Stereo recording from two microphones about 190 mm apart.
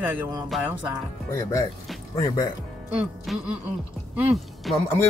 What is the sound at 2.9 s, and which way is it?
Music, 5° right (ahead or behind).